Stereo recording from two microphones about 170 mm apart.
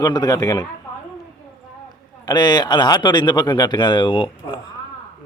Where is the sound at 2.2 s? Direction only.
25° left (ahead or behind).